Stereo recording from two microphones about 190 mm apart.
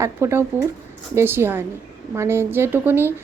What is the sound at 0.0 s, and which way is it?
A woman's voice, 15° right (ahead or behind).